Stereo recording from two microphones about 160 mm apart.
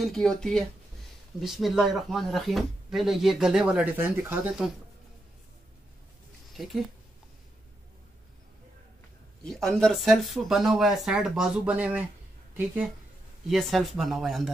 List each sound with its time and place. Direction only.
0.0 s speech: 5° left (ahead or behind)
6.5 s speech: centre (ahead or behind)
9.4 s a woman's voice: centre (ahead or behind)